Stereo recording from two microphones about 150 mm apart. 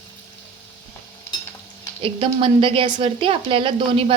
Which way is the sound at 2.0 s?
35° right (ahead or behind).